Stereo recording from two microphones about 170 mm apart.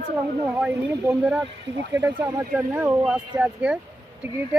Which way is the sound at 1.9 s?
20° right (ahead or behind).